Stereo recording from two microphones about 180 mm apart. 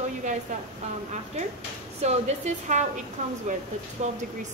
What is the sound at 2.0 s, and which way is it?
A woman's voice, 40° right (ahead or behind).